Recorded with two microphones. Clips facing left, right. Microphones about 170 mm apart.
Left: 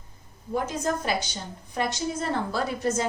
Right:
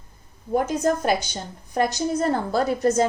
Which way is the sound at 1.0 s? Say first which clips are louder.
Right 5 dB; 45° right (ahead or behind).